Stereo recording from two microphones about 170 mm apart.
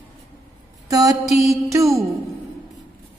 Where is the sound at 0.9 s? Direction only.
20° right (ahead or behind).